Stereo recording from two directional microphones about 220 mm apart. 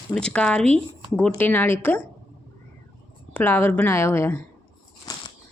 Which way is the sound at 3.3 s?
10° left (ahead or behind).